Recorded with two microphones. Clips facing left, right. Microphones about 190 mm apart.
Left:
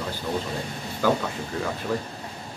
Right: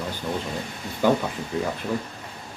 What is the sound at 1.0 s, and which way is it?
Speech, 20° right (ahead or behind).